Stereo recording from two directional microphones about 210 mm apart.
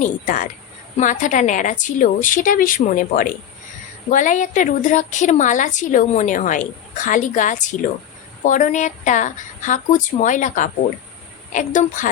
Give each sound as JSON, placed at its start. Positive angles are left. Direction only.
{"t": 0.0, "sound": "a woman's voice", "side_deg": 40}